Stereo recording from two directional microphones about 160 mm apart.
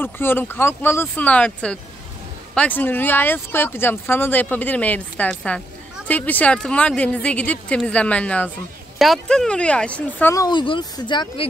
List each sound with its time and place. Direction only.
0.0 s speech: 15° left (ahead or behind)
10.3 s speech: 25° left (ahead or behind)